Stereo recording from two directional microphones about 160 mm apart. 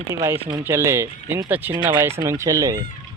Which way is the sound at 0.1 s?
15° right (ahead or behind).